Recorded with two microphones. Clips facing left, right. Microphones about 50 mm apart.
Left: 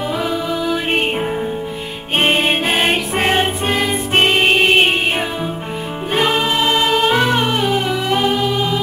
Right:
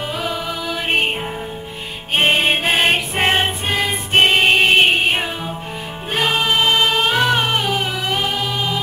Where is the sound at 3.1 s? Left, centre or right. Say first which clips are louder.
Left 1 dB; centre.